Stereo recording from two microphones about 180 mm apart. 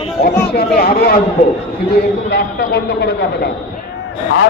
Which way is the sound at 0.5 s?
60° left (ahead or behind).